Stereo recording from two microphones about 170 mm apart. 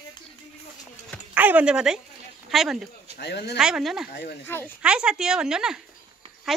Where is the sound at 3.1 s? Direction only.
80° left.